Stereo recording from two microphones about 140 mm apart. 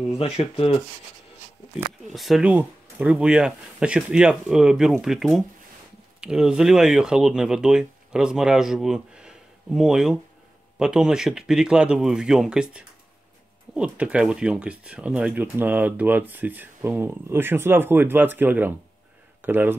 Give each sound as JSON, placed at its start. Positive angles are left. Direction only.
{"t": 0.2, "sound": "speech", "side_deg": 45}
{"t": 2.1, "sound": "speech", "side_deg": 0}